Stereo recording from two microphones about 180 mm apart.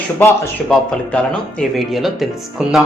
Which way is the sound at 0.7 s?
5° left (ahead or behind).